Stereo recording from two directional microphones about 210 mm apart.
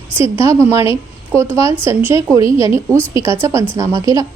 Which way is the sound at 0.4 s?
10° right (ahead or behind).